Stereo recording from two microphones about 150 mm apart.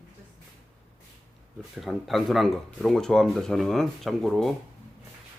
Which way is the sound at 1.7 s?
Centre (ahead or behind).